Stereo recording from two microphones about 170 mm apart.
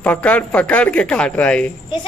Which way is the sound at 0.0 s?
10° left (ahead or behind).